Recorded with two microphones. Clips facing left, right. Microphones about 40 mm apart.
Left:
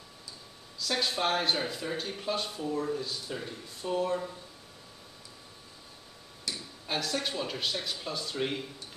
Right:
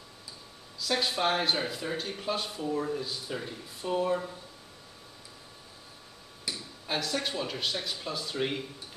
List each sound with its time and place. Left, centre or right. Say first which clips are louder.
0.7 s speech: right 1 dB; centre
6.5 s a sound: right 1 dB; centre
6.9 s speech: right 1 dB; centre